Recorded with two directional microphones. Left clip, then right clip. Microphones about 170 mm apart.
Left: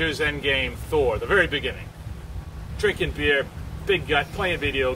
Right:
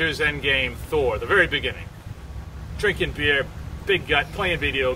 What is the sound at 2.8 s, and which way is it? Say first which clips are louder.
Speech: right 1 dB; 5° right (ahead or behind).